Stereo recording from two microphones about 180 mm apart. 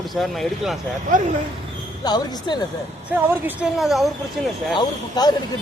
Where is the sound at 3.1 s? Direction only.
10° right (ahead or behind).